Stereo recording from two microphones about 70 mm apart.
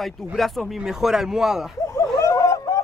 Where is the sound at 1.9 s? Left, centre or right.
Left.